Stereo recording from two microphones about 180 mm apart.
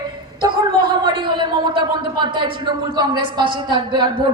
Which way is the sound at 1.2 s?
25° right (ahead or behind).